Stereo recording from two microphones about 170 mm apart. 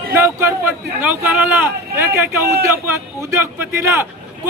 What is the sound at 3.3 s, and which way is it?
Speech, 15° right (ahead or behind).